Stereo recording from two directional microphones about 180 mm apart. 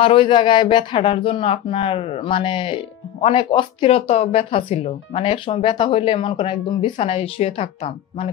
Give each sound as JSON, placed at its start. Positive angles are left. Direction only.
{"t": 0.0, "sound": "speech", "side_deg": 30}